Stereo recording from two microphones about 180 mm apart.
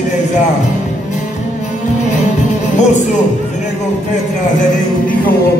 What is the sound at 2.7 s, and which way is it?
Speech, 40° left (ahead or behind).